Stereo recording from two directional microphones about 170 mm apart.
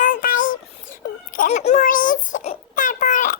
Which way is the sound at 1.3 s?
45° left (ahead or behind).